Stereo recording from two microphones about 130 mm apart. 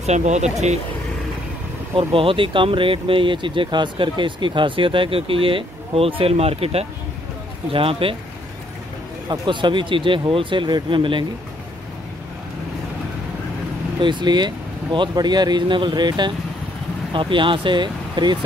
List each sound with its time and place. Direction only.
0.0 s speech: 60° right (ahead or behind)
2.0 s speech: 45° right (ahead or behind)
9.3 s speech: 35° right (ahead or behind)
14.0 s speech: 35° right (ahead or behind)